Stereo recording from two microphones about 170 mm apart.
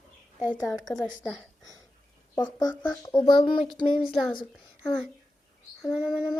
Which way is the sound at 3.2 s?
30° left (ahead or behind).